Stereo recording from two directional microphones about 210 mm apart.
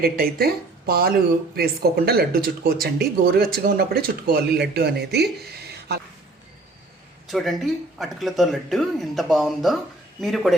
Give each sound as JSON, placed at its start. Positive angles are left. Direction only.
{"t": 0.0, "sound": "speech", "side_deg": -45}
{"t": 7.3, "sound": "speech", "side_deg": 0}